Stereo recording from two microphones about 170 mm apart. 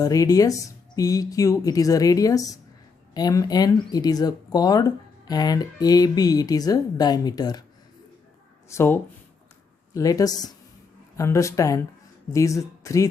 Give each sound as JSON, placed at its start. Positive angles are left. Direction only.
{"t": 0.0, "sound": "speech", "side_deg": 20}
{"t": 8.7, "sound": "speech", "side_deg": 15}